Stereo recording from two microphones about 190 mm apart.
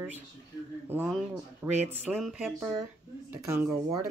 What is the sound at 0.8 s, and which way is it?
Speech, 10° right (ahead or behind).